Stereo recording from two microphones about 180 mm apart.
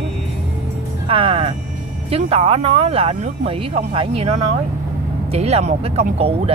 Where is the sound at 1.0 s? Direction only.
30° right (ahead or behind).